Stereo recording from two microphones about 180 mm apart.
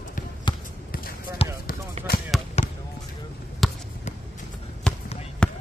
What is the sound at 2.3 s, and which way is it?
Basketball bounce, centre (ahead or behind).